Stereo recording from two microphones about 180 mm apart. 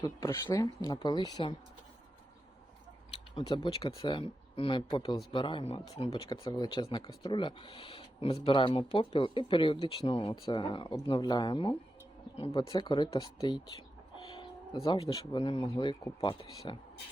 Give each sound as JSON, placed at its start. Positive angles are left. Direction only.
{"t": 0.0, "sound": "speech", "side_deg": 20}
{"t": 3.4, "sound": "speech", "side_deg": 25}